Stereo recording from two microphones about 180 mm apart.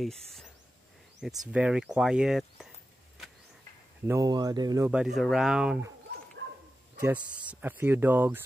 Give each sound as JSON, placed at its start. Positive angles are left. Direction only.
{"t": 0.0, "sound": "speech", "side_deg": 0}
{"t": 4.0, "sound": "speech", "side_deg": -15}
{"t": 4.9, "sound": "speech", "side_deg": 0}
{"t": 7.0, "sound": "speech", "side_deg": -10}